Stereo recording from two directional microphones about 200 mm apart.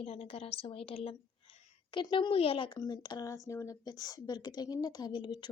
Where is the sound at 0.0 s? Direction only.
30° left (ahead or behind).